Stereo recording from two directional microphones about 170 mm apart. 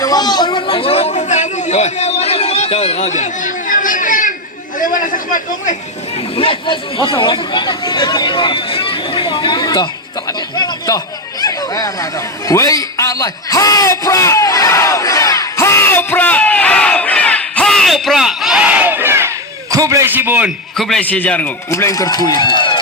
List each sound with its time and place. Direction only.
0.0 s chatter: 20° left (ahead or behind); by 4.4 s 50° left (ahead or behind)
4.8 s a sound: 50° left (ahead or behind)
6.3 s a man's voice: 30° left (ahead or behind); by 20.5 s 10° right (ahead or behind)
20.7 s a man's voice: centre (ahead or behind); by 22.8 s 25° left (ahead or behind)